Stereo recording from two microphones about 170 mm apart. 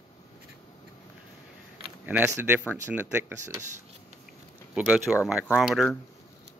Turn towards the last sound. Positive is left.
turn(degrees=0)  # may be behind; listen again after turning